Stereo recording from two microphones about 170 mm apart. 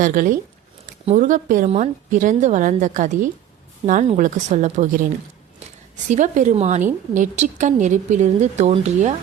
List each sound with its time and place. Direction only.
0.0 s a woman's voice: 55° right (ahead or behind)
6.1 s a woman's voice: 45° right (ahead or behind)